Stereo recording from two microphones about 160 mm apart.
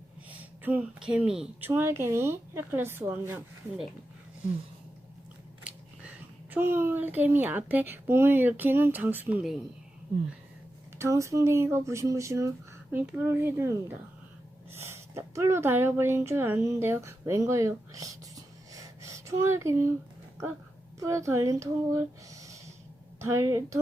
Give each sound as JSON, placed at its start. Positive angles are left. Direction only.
{"t": 0.6, "sound": "a woman's voice", "side_deg": -10}
{"t": 6.5, "sound": "a woman's voice", "side_deg": -15}
{"t": 10.9, "sound": "a woman's voice", "side_deg": -15}
{"t": 21.0, "sound": "a woman's voice", "side_deg": -20}